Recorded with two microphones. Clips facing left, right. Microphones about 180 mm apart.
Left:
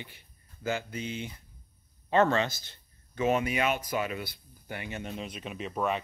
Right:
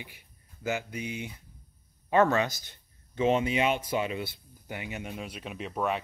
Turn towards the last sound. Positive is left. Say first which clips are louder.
# even
turn(degrees=0)  # may be behind; listen again after turning